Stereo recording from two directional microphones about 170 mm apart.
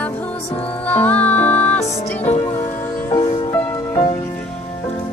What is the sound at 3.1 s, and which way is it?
Music, 25° left (ahead or behind).